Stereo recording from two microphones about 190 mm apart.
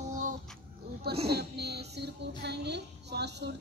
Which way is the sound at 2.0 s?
60° right (ahead or behind).